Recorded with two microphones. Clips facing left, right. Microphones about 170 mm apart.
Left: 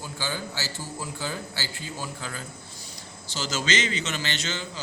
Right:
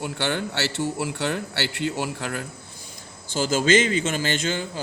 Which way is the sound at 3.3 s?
50° right (ahead or behind).